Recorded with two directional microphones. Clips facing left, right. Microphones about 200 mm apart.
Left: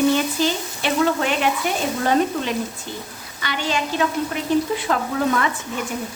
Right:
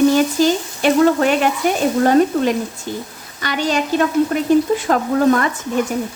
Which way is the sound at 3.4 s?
45° right (ahead or behind).